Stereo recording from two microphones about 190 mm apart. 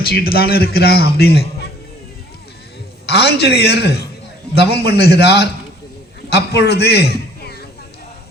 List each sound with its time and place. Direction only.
0.1 s a man's voice: 55° left (ahead or behind)
3.1 s a man's voice: 60° left (ahead or behind)